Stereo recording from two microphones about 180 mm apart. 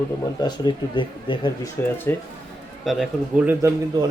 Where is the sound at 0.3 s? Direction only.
25° left (ahead or behind).